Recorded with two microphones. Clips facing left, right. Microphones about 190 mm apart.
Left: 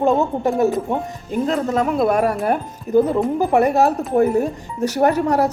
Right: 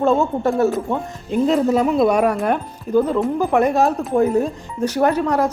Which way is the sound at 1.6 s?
5° right (ahead or behind).